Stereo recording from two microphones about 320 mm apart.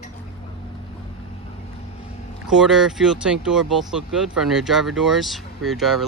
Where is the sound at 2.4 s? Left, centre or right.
Centre.